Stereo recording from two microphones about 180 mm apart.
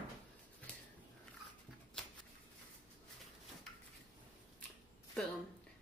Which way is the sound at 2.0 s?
5° left (ahead or behind).